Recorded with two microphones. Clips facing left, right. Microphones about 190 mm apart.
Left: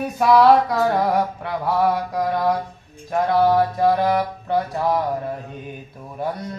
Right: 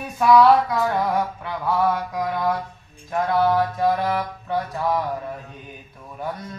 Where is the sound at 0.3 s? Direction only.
35° left (ahead or behind).